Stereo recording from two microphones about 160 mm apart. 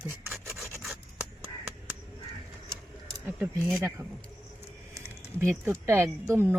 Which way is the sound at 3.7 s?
20° right (ahead or behind).